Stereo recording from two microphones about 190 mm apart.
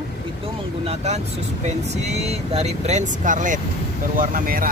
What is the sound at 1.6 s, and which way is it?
Speech, 35° right (ahead or behind).